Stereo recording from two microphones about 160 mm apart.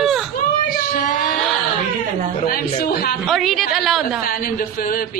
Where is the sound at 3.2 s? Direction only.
Centre (ahead or behind).